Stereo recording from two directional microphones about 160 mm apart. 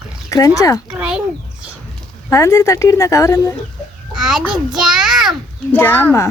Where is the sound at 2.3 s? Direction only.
20° left (ahead or behind).